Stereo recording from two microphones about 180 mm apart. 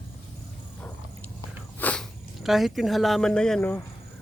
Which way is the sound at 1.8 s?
10° left (ahead or behind).